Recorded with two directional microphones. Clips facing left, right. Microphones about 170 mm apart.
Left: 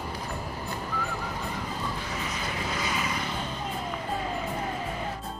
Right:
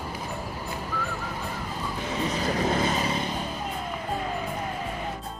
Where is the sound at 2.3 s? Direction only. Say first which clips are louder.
Right 11 dB; 35° right (ahead or behind).